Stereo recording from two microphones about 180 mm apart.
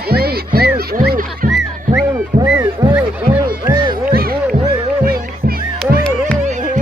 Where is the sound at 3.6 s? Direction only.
25° right (ahead or behind).